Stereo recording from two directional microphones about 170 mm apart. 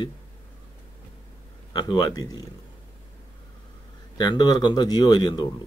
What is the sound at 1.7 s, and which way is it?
Speech, 25° left (ahead or behind).